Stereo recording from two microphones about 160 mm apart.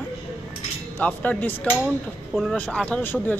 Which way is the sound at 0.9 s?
10° left (ahead or behind).